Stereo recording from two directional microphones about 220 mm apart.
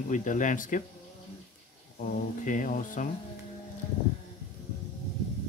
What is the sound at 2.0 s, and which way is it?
Speech, 35° left (ahead or behind).